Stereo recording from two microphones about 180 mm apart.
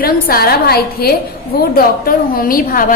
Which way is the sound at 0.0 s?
55° left (ahead or behind).